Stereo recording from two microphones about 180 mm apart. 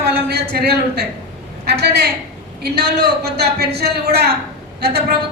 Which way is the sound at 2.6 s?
65° right (ahead or behind).